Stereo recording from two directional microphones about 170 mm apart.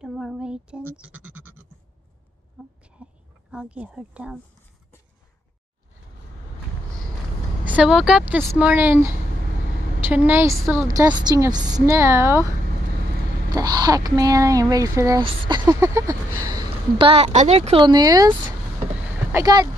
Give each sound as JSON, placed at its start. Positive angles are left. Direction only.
{"t": 0.0, "sound": "bleat", "side_deg": 0}
{"t": 2.6, "sound": "a sound", "side_deg": -5}
{"t": 3.5, "sound": "a woman's voice", "side_deg": -5}
{"t": 7.6, "sound": "a woman's voice", "side_deg": -5}
{"t": 13.6, "sound": "a woman's voice", "side_deg": -25}
{"t": 17.1, "sound": "speech", "side_deg": -40}
{"t": 19.3, "sound": "a woman's voice", "side_deg": -25}